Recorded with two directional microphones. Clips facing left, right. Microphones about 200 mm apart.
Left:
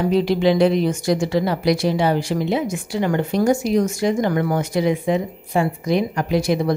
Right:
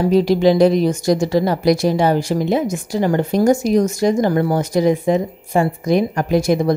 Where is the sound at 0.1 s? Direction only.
40° right (ahead or behind).